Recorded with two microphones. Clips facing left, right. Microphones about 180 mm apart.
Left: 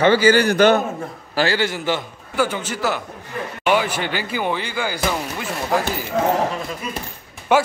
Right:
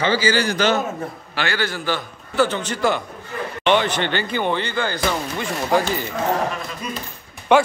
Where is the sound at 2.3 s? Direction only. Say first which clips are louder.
Right 2 dB; 10° left (ahead or behind).